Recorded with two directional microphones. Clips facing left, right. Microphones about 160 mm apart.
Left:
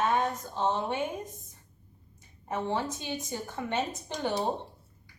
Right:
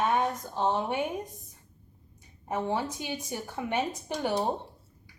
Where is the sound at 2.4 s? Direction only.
15° right (ahead or behind).